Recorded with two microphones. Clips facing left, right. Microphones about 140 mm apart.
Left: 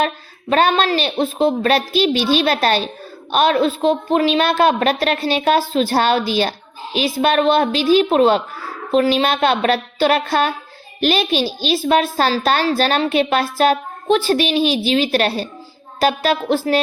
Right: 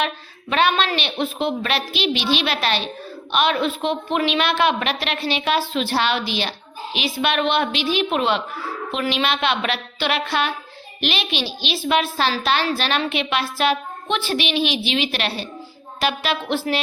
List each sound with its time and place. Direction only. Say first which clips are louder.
0.5 s a woman's voice: left 4 dB; 40° left (ahead or behind)